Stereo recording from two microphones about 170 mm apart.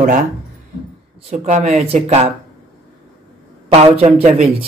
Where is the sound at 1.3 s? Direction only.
40° right (ahead or behind).